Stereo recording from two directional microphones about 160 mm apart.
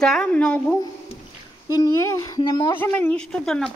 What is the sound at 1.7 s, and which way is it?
Speech, 20° left (ahead or behind).